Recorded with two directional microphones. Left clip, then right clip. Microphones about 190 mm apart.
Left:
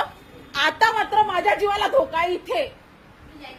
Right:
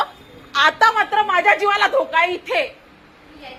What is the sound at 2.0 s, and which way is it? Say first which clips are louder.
Speech: right 3 dB; centre (ahead or behind).